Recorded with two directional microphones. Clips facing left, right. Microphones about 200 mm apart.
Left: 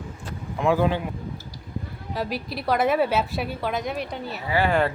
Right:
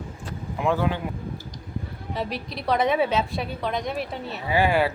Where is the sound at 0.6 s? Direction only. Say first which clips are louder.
Left 2 dB; 5° right (ahead or behind).